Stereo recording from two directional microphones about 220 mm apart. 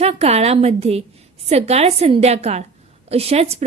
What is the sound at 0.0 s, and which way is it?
A woman's voice, 30° right (ahead or behind).